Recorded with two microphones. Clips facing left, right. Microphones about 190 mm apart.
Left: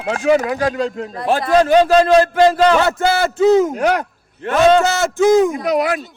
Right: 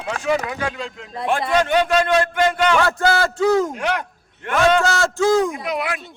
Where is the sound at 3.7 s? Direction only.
40° left (ahead or behind).